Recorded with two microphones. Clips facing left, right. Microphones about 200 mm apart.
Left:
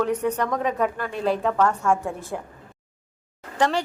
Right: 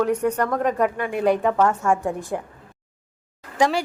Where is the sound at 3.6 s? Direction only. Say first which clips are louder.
Right 2 dB; 10° right (ahead or behind).